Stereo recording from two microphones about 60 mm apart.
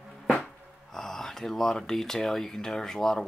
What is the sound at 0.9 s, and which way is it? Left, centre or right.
Speech, centre.